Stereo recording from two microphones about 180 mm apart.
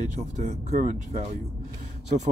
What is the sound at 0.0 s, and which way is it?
Speech, 40° right (ahead or behind).